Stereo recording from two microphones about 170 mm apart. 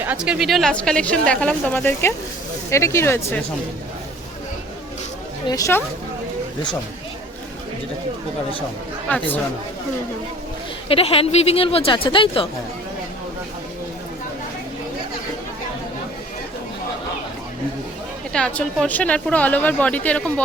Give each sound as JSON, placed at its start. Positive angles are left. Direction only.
{"t": 0.0, "sound": "a woman's voice", "side_deg": -10}
{"t": 5.5, "sound": "speech", "side_deg": 20}
{"t": 9.0, "sound": "speech", "side_deg": 10}
{"t": 10.8, "sound": "speech", "side_deg": 35}
{"t": 18.3, "sound": "speech", "side_deg": 5}